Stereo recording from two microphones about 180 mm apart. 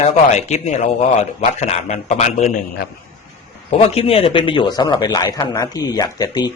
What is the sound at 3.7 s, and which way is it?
A man's voice, 35° left (ahead or behind).